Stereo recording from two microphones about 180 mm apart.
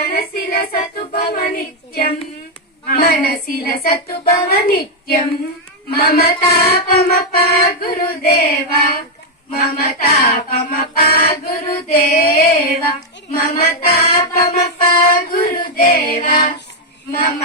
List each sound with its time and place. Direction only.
0.0 s child singing: 60° left (ahead or behind)
2.9 s music: 55° left (ahead or behind)
10.0 s music: 55° left (ahead or behind)